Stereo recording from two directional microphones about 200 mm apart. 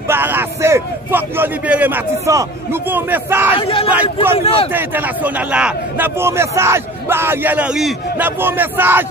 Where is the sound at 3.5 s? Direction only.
25° left (ahead or behind).